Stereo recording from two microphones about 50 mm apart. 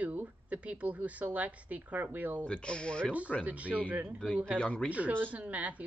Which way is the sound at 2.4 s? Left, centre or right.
Left.